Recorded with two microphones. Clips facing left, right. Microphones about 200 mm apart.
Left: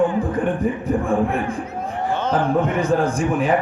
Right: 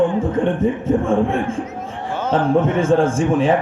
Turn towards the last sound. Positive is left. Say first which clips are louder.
# right 3 dB
turn(degrees=-25)  # may be behind; listen again after turning